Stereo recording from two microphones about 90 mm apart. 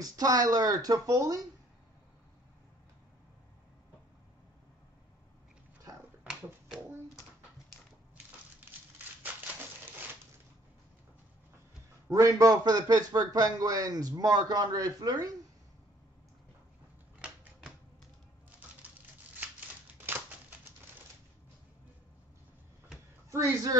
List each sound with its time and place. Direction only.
0.0 s a man's voice: 40° right (ahead or behind)
12.1 s a man's voice: 40° right (ahead or behind)
17.2 s typewriter: 10° right (ahead or behind)
18.8 s a sound: 20° right (ahead or behind)
23.3 s speech: 40° right (ahead or behind)